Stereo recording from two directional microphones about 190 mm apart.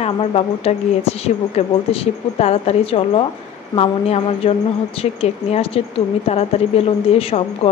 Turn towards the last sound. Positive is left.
turn(degrees=30)  # may be behind; listen again after turning